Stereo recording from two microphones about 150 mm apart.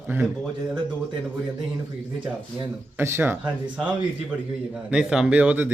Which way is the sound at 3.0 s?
15° right (ahead or behind).